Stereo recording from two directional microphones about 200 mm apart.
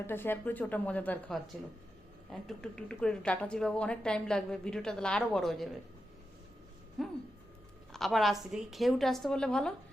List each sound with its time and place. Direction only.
0.1 s speech: 10° left (ahead or behind)
2.5 s a woman's voice: 5° left (ahead or behind)
7.0 s a woman's voice: centre (ahead or behind)